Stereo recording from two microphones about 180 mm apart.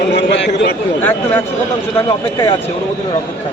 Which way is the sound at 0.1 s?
80° left.